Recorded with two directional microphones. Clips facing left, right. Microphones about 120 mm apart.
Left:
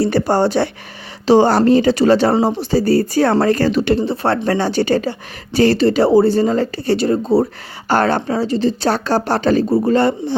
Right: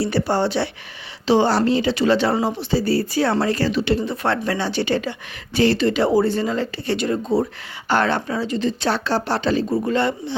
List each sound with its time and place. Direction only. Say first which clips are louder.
0.0 s speech: left 5 dB; 45° left (ahead or behind)
4.0 s a woman's voice: left 5 dB; 30° left (ahead or behind)